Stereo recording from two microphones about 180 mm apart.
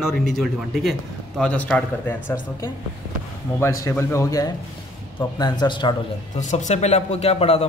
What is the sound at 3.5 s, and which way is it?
A man's voice, 15° left (ahead or behind).